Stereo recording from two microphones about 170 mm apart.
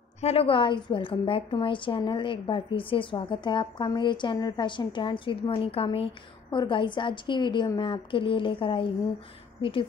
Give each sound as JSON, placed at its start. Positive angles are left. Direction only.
{"t": 0.2, "sound": "a woman's voice", "side_deg": 35}